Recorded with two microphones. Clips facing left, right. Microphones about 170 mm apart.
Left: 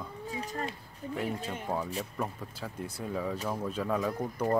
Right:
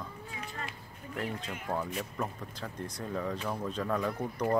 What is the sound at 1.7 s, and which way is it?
Speech, 10° left (ahead or behind).